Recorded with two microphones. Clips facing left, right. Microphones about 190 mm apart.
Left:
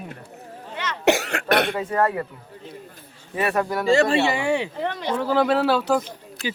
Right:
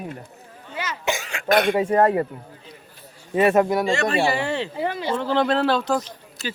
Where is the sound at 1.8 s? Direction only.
25° right (ahead or behind).